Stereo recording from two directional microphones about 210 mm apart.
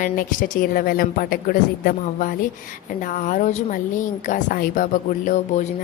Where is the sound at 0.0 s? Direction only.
40° left (ahead or behind).